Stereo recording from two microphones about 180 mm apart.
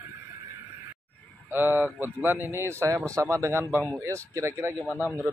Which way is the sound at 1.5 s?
10° right (ahead or behind).